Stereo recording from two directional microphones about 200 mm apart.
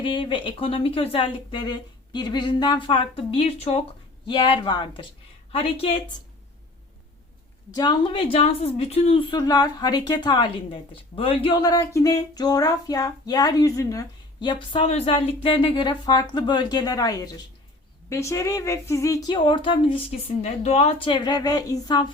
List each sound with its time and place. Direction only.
0.0 s a woman's voice: 25° left (ahead or behind)
7.7 s a woman's voice: 20° left (ahead or behind)